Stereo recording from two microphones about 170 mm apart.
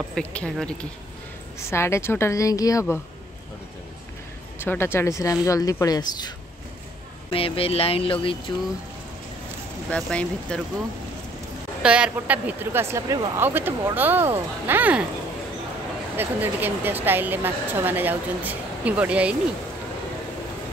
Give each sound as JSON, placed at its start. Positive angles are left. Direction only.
{"t": 0.1, "sound": "a woman's voice", "side_deg": 5}
{"t": 4.6, "sound": "speech", "side_deg": 15}
{"t": 9.8, "sound": "speech", "side_deg": 5}
{"t": 11.8, "sound": "speech", "side_deg": -5}
{"t": 16.2, "sound": "speech", "side_deg": -10}